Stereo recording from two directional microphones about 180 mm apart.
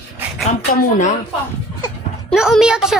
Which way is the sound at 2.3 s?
Centre (ahead or behind).